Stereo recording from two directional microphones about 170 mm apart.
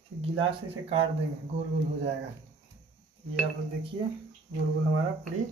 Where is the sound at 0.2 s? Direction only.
35° right (ahead or behind).